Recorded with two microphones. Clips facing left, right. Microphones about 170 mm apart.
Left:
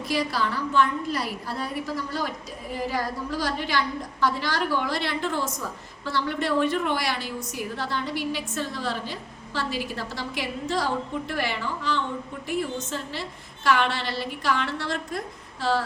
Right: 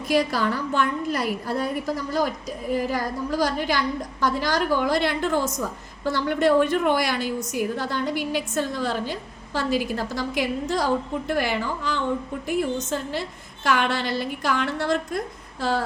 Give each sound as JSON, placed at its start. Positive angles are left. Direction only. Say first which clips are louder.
{"t": 0.1, "sound": "a woman's voice", "louder": "right 5 dB", "side_deg": -50}
{"t": 2.7, "sound": "a woman's voice", "louder": "right 2 dB", "side_deg": -45}